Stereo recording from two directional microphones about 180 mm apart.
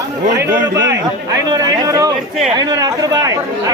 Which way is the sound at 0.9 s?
20° right (ahead or behind).